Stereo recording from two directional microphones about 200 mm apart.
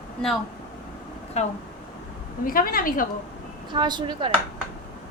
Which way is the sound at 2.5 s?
45° left (ahead or behind).